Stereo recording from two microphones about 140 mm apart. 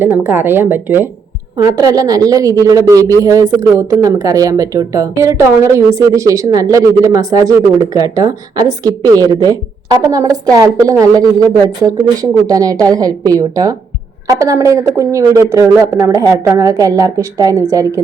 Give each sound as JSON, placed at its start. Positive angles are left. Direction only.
{"t": 0.3, "sound": "speech", "side_deg": -15}
{"t": 1.5, "sound": "a woman's voice", "side_deg": -25}